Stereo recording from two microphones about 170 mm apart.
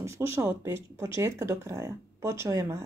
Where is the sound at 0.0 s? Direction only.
15° right (ahead or behind).